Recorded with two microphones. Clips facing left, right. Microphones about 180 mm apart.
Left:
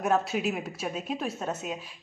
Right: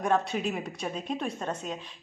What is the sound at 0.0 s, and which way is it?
A woman's voice, 5° left (ahead or behind).